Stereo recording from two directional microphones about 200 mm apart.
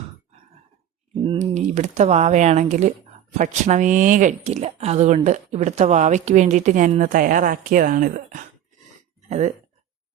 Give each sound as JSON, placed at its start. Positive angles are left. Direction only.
{"t": 1.2, "sound": "speech", "side_deg": -30}